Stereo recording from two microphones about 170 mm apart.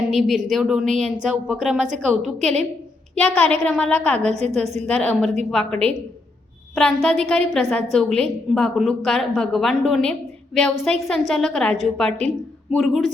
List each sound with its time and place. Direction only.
0.1 s a woman's voice: centre (ahead or behind)
4.2 s a woman's voice: 40° right (ahead or behind)
4.9 s a woman's voice: 5° left (ahead or behind)